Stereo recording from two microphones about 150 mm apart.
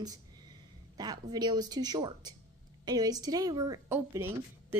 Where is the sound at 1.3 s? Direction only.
25° right (ahead or behind).